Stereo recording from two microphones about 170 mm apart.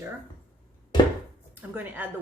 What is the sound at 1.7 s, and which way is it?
Speech, 10° right (ahead or behind).